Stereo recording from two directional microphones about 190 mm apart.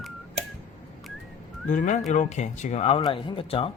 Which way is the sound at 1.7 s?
40° left (ahead or behind).